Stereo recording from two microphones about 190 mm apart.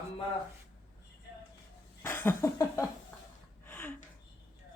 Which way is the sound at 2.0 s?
10° left (ahead or behind).